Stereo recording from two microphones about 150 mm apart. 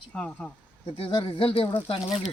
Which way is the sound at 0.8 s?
35° left (ahead or behind).